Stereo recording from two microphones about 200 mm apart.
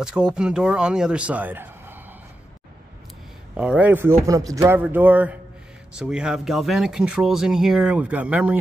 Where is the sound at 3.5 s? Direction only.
5° right (ahead or behind).